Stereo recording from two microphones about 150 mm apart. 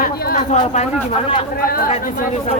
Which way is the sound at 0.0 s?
65° left (ahead or behind).